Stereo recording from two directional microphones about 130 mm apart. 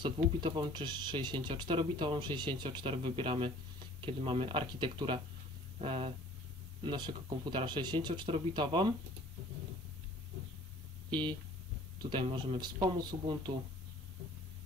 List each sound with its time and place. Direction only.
0.0 s speech: 35° right (ahead or behind)
6.8 s speech: 35° right (ahead or behind)
11.1 s speech: 35° right (ahead or behind)